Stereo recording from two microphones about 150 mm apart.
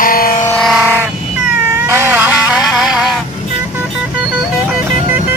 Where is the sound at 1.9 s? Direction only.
15° right (ahead or behind).